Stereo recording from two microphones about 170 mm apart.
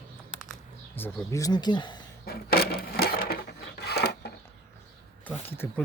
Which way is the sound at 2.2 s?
65° left (ahead or behind).